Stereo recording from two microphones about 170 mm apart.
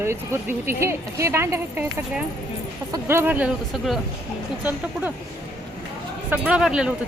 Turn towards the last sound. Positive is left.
turn(degrees=-5)  # may be behind; listen again after turning